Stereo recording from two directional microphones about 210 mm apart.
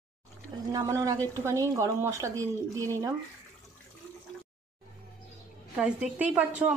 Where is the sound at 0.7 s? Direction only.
15° right (ahead or behind).